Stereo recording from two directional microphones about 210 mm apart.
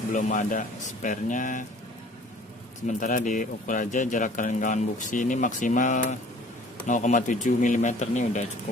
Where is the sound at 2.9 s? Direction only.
35° left (ahead or behind).